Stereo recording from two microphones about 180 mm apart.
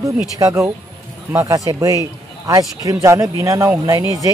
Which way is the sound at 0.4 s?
20° right (ahead or behind).